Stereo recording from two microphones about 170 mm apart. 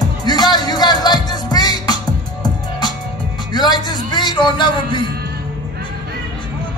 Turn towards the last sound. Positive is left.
turn(degrees=25)  # may be behind; listen again after turning